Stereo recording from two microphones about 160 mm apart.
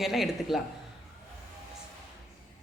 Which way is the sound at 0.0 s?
Centre (ahead or behind).